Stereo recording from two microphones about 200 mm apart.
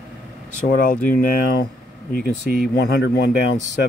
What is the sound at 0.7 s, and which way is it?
Speech, 45° left (ahead or behind).